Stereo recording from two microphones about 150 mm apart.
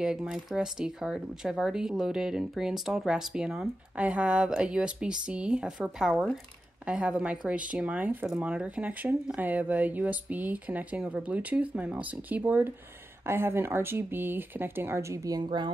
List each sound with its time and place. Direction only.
0.0 s speech: 5° right (ahead or behind); by 15.7 s 30° right (ahead or behind)